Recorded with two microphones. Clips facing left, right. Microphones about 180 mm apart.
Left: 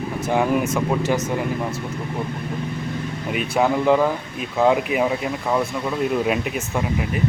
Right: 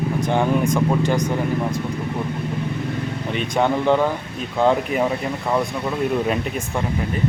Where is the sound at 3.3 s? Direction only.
5° left (ahead or behind).